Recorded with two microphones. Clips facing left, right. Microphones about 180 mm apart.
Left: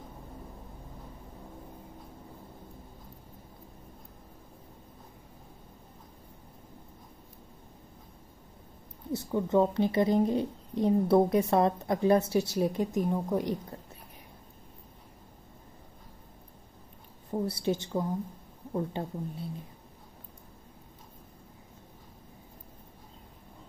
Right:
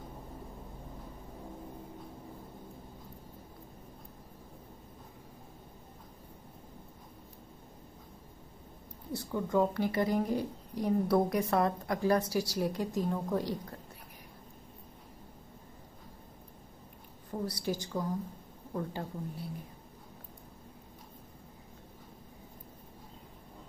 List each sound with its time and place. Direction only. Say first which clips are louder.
9.1 s a woman's voice: left 4 dB; 25° left (ahead or behind)
17.3 s a woman's voice: left 5 dB; 25° left (ahead or behind)